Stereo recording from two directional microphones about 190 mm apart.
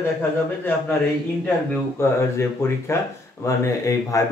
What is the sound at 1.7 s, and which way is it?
Speech, 15° left (ahead or behind).